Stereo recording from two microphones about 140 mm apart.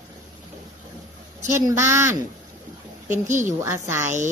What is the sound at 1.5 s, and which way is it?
Speech, 20° right (ahead or behind).